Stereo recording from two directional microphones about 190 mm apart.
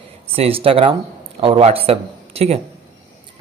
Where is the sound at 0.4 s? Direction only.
30° right (ahead or behind).